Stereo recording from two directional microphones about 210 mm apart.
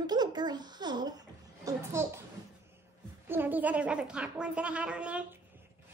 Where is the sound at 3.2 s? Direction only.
10° right (ahead or behind).